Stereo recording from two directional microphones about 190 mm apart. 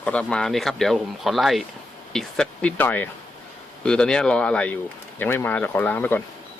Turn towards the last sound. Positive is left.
turn(degrees=10)  # may be behind; listen again after turning